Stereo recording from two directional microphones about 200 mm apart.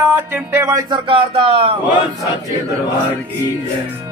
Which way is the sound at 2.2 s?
15° right (ahead or behind).